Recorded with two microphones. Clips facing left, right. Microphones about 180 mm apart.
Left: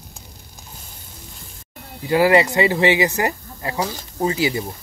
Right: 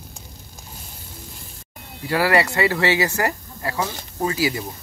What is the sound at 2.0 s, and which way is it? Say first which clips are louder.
Speech: left 4 dB; 20° left (ahead or behind).